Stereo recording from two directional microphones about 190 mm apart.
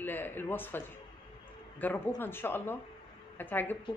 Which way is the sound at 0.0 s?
10° left (ahead or behind).